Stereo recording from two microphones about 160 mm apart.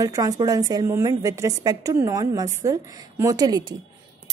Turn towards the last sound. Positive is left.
turn(degrees=-25)  # may be behind; listen again after turning